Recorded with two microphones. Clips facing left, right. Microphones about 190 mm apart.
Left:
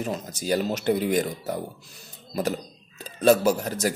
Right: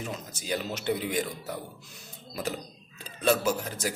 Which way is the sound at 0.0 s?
40° left (ahead or behind).